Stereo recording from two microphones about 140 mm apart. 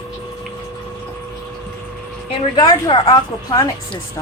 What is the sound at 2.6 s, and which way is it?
A woman's voice, 30° left (ahead or behind).